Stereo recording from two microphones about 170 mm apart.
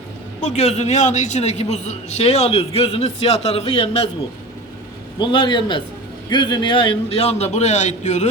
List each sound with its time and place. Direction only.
0.4 s a man's voice: 40° left (ahead or behind)
5.2 s a man's voice: 25° left (ahead or behind); by 8.3 s 45° left (ahead or behind)